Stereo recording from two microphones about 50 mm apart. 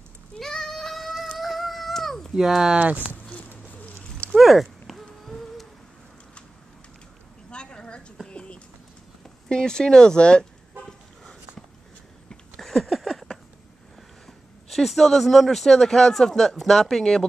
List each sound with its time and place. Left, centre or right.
0.4 s child singing: centre
1.4 s cat: centre
2.3 s speech: centre
2.7 s speech: right
3.6 s bird: left
4.4 s a sound: centre
7.5 s a sound: centre
9.5 s speech: centre
10.9 s toot: centre
12.5 s a sound: centre
14.7 s speech: centre